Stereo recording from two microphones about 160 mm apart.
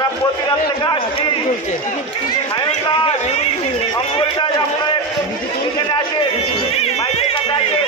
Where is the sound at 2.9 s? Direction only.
30° left (ahead or behind).